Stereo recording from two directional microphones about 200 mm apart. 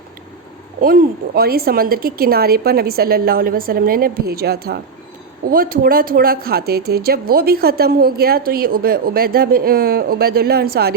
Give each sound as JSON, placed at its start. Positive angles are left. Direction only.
{"t": 0.8, "sound": "speech", "side_deg": -45}